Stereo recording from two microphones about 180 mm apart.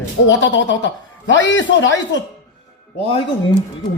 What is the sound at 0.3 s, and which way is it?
A man's voice, 90° left.